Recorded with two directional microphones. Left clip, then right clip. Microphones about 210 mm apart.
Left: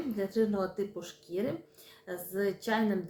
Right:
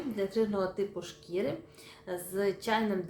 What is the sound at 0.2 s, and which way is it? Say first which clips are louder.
A woman's voice: right 1 dB; centre (ahead or behind).